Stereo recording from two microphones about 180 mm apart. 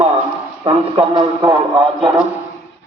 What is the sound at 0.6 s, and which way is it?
A man's voice, 25° right (ahead or behind).